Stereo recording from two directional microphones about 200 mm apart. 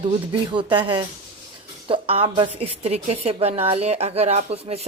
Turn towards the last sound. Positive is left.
turn(degrees=-30)  # may be behind; listen again after turning